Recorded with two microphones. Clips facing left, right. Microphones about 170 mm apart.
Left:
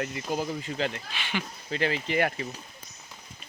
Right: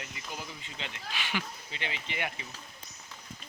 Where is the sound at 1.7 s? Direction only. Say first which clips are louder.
Left 15 dB; 45° left (ahead or behind).